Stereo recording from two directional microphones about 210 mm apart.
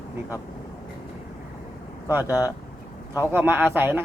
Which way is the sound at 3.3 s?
10° right (ahead or behind).